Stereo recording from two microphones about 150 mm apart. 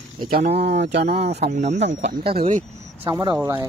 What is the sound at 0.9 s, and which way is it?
Speech, 90° right.